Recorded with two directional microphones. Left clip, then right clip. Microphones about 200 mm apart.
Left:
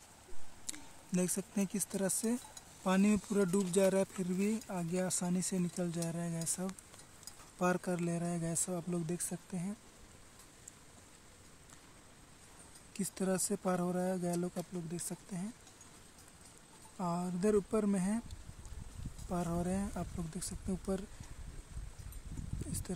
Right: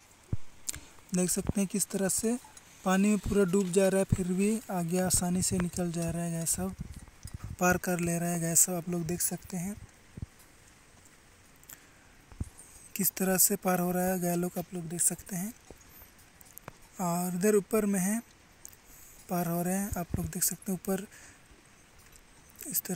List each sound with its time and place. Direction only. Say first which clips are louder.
0.7 s speech: right 5 dB; 20° right (ahead or behind)
12.9 s speech: right 6 dB; 15° right (ahead or behind)
16.9 s speech: right 6 dB; 15° right (ahead or behind)
19.2 s speech: right 6 dB; 15° right (ahead or behind)
22.7 s speech: right 8 dB; 15° right (ahead or behind)